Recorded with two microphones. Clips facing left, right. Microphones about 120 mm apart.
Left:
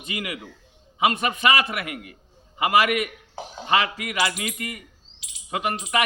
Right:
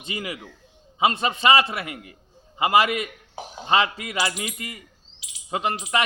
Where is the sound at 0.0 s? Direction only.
25° right (ahead or behind).